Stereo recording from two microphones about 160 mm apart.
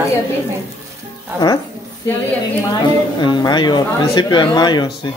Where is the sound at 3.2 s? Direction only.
30° left (ahead or behind).